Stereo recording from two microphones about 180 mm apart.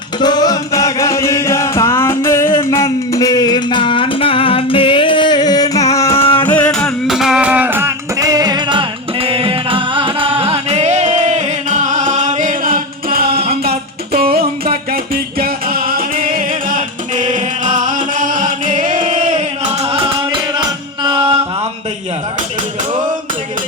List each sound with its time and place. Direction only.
0.2 s music: 25° left (ahead or behind); by 13.4 s 55° right (ahead or behind)
13.5 s a sound: 60° right (ahead or behind); by 20.0 s 35° right (ahead or behind)
20.6 s music: 25° right (ahead or behind)